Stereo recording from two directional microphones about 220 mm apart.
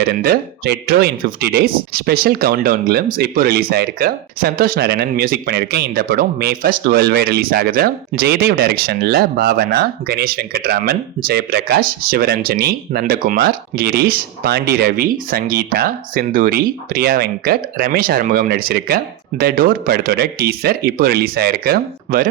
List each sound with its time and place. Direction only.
0.0 s speech: 45° right (ahead or behind)